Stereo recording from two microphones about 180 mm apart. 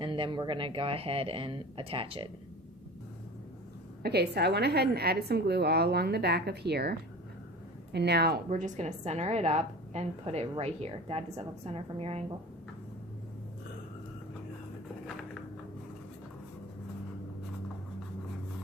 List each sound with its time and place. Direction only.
0.0 s speech: 25° right (ahead or behind)
4.0 s a woman's voice: 65° right (ahead or behind)
7.9 s a woman's voice: 65° right (ahead or behind); by 12.2 s 35° right (ahead or behind)